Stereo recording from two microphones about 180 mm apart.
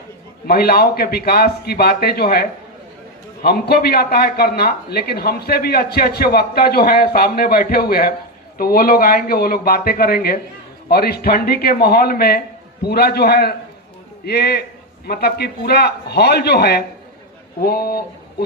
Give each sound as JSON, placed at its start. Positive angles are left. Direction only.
{"t": 0.4, "sound": "speech", "side_deg": 60}